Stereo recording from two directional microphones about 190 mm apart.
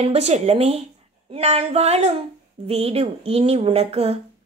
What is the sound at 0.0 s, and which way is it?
Speech, 35° right (ahead or behind).